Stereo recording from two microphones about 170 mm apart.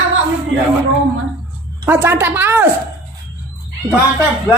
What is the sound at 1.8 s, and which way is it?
Speech, 15° right (ahead or behind).